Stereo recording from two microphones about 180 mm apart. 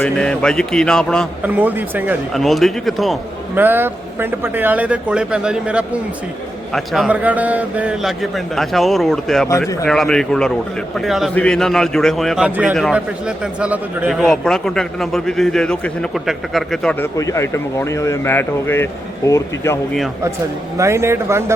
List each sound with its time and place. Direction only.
0.0 s a man's voice: 5° left (ahead or behind)
1.5 s a man's voice: 10° right (ahead or behind)
2.3 s a man's voice: centre (ahead or behind)
3.5 s a man's voice: 10° right (ahead or behind)
9.5 s speech: 15° left (ahead or behind)
9.9 s a man's voice: 5° left (ahead or behind)
20.7 s a man's voice: 15° right (ahead or behind)